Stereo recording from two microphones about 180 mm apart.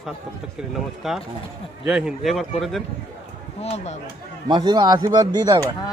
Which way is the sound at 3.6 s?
35° left (ahead or behind).